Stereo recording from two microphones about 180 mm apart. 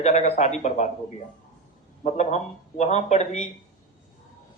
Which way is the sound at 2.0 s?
40° left (ahead or behind).